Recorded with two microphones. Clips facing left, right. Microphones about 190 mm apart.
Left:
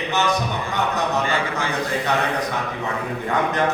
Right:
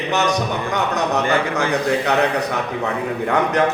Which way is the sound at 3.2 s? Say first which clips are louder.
Right 4 dB; 70° right (ahead or behind).